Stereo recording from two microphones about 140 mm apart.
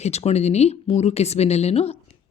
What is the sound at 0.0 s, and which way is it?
Speech, 50° left (ahead or behind).